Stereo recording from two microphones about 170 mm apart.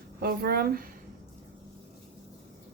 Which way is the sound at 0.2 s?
65° right (ahead or behind).